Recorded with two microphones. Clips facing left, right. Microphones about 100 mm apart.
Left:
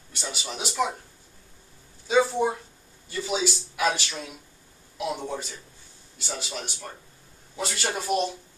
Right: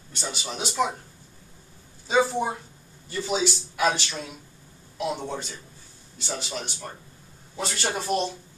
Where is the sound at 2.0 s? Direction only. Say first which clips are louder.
Left 1 dB; 5° right (ahead or behind).